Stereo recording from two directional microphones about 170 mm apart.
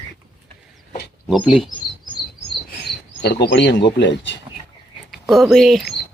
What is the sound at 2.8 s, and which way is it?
Speech, 75° left (ahead or behind).